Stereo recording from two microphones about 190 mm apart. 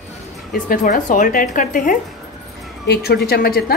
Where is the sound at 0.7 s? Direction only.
45° left (ahead or behind).